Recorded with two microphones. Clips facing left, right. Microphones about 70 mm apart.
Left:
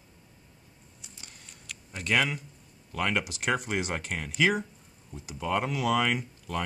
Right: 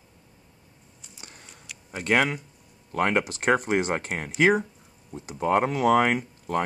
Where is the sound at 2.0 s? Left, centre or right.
Right.